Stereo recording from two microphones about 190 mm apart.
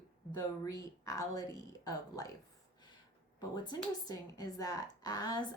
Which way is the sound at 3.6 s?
20° left (ahead or behind).